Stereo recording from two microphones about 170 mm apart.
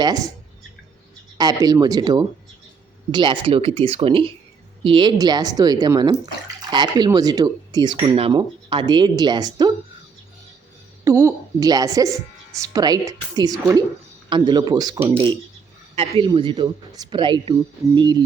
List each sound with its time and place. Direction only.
0.0 s speech: 20° right (ahead or behind)
1.4 s speech: 20° right (ahead or behind)
11.0 s speech: 15° right (ahead or behind)